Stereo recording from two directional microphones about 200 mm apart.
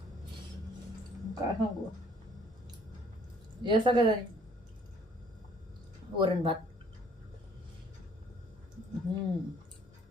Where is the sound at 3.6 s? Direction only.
25° right (ahead or behind).